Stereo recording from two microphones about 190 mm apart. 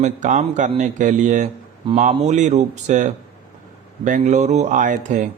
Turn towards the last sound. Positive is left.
turn(degrees=-40)  # may be behind; listen again after turning